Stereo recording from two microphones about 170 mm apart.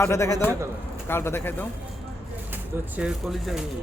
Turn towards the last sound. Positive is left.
turn(degrees=0)  # may be behind; listen again after turning